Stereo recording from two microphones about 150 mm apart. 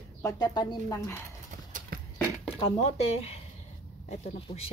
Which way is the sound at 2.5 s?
40° left (ahead or behind).